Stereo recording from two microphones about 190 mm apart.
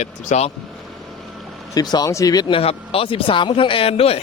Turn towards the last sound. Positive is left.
turn(degrees=30)  # may be behind; listen again after turning